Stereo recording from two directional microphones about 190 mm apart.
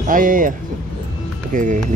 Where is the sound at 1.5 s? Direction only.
45° right (ahead or behind).